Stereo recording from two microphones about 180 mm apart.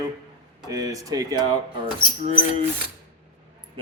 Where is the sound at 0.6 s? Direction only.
20° right (ahead or behind).